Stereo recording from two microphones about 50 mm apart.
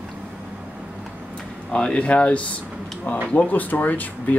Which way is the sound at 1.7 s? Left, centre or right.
Centre.